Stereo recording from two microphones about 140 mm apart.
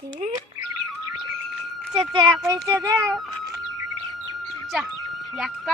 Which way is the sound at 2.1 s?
30° right (ahead or behind).